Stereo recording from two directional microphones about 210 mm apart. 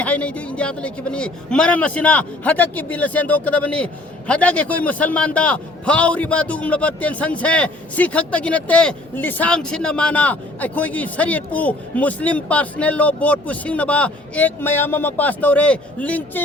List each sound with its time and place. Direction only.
0.0 s a man's voice: 5° left (ahead or behind)